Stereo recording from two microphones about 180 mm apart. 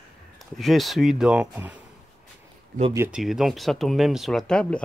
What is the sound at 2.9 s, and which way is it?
Speech, 10° right (ahead or behind).